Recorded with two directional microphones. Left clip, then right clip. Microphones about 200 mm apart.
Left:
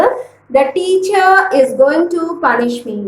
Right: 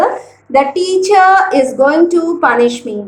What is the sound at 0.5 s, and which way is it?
A woman's voice, 25° right (ahead or behind).